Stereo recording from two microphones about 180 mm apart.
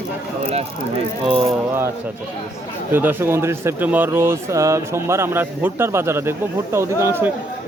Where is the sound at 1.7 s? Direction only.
15° right (ahead or behind).